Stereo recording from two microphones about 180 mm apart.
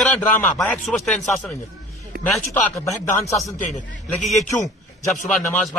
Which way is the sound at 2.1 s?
60° right (ahead or behind).